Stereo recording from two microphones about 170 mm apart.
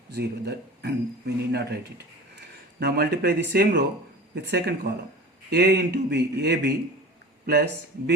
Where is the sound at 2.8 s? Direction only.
70° right (ahead or behind).